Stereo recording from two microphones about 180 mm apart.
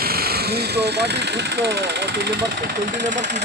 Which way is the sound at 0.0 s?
60° right (ahead or behind).